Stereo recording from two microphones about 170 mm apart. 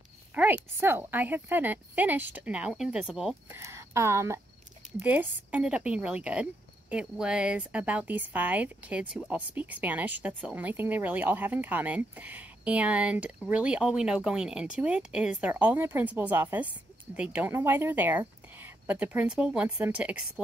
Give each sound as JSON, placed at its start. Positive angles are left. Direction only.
{"t": 0.3, "sound": "speech", "side_deg": -10}
{"t": 3.4, "sound": "speech", "side_deg": -15}